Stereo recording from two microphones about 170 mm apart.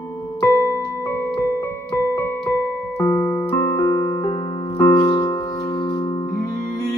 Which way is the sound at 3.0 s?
15° left (ahead or behind).